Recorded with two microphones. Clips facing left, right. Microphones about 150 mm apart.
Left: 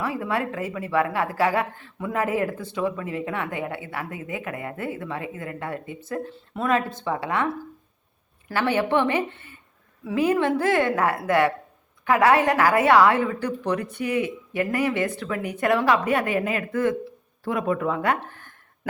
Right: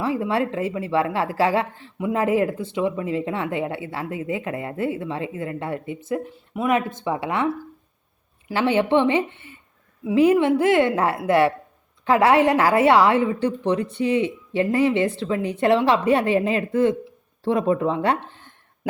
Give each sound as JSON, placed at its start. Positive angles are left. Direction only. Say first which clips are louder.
{"t": 0.0, "sound": "speech", "louder": "right 4 dB", "side_deg": -25}
{"t": 8.5, "sound": "speech", "louder": "right 3 dB", "side_deg": -20}